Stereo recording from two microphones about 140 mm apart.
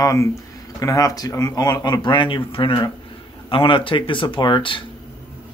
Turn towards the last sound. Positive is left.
turn(degrees=35)  # may be behind; listen again after turning